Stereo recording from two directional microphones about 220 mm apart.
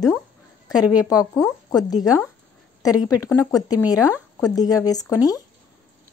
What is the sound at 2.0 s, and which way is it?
Speech, 15° left (ahead or behind).